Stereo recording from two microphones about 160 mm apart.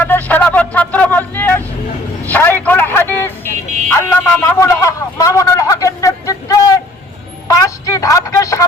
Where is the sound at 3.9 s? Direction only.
15° left (ahead or behind).